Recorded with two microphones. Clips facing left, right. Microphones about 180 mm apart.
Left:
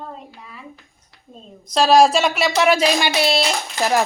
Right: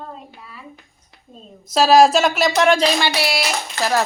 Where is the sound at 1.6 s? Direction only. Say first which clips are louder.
Right 1 dB; 5° right (ahead or behind); by 4.0 s 15° left (ahead or behind).